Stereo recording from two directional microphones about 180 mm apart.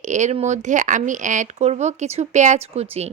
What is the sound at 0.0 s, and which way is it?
A woman's voice, 40° right (ahead or behind).